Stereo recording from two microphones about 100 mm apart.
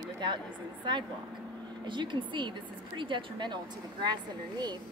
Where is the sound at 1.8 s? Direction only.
55° right (ahead or behind).